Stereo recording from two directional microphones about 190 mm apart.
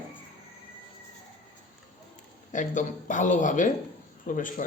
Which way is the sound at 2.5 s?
40° left (ahead or behind).